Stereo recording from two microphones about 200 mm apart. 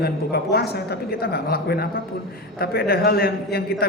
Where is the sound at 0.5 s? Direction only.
55° left (ahead or behind).